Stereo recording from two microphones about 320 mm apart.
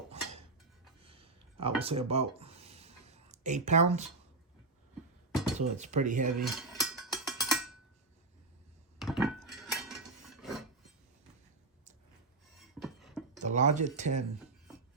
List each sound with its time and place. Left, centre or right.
1.0 s a sound: centre
5.5 s speech: right
6.4 s a sound: centre
9.0 s dishes: centre
12.5 s beatboxing: centre
13.4 s speech: right